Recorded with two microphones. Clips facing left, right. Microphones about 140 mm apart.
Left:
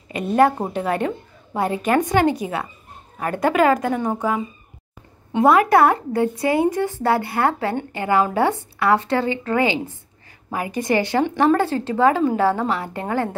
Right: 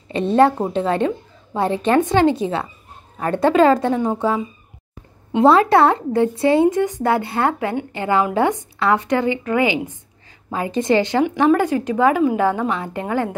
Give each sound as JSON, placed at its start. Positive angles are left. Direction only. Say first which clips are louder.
{"t": 0.1, "sound": "a sound", "louder": "right 2 dB", "side_deg": -25}
{"t": 0.7, "sound": "a woman's voice", "louder": "right 3 dB", "side_deg": -25}
{"t": 5.3, "sound": "a woman's voice", "louder": "right 2 dB", "side_deg": -25}